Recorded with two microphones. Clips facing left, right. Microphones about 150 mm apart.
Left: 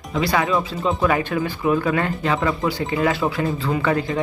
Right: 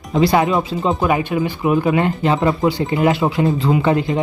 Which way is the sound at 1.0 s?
15° right (ahead or behind).